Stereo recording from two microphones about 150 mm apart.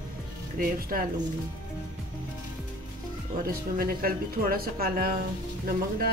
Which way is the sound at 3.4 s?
85° right.